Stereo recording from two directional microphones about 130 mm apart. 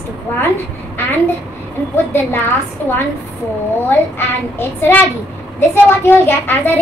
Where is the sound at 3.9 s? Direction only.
15° left (ahead or behind).